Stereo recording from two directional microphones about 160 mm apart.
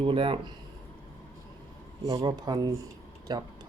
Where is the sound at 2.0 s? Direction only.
20° right (ahead or behind).